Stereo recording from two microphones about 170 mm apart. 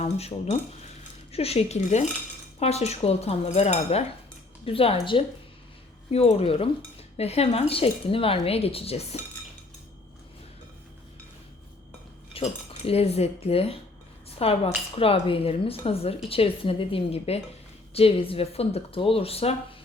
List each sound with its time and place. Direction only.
0.0 s speech: 40° left (ahead or behind)
12.3 s speech: 35° left (ahead or behind)
14.3 s dishes: 35° left (ahead or behind)
14.9 s speech: 35° left (ahead or behind)